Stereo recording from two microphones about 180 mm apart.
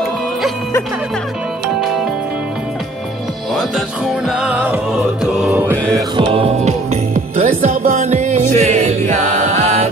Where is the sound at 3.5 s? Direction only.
Centre (ahead or behind).